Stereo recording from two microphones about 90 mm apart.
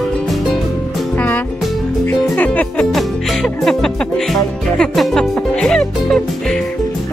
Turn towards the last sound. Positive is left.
turn(degrees=5)  # may be behind; listen again after turning